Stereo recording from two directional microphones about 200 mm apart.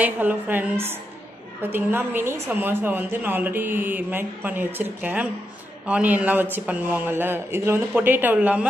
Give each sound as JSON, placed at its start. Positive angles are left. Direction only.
{"t": 0.0, "sound": "a woman's voice", "side_deg": -10}